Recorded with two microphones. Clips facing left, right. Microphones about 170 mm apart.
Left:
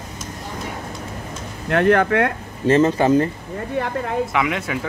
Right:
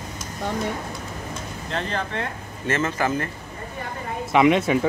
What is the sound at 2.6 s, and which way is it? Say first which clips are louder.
Speech: left 9 dB; 35° left (ahead or behind).